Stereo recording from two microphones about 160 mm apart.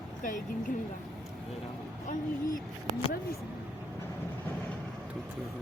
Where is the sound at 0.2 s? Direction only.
55° left (ahead or behind).